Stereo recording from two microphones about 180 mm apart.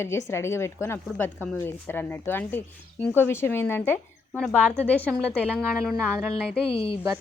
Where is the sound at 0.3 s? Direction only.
15° left (ahead or behind).